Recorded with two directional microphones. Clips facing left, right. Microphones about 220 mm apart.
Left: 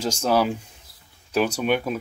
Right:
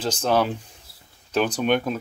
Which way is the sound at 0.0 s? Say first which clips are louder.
Even; 10° left (ahead or behind).